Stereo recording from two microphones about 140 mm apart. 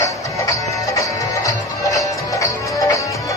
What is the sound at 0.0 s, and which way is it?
Music, 20° left (ahead or behind).